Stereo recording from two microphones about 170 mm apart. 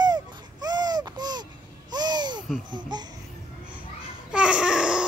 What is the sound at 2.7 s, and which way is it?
Speech, 25° right (ahead or behind).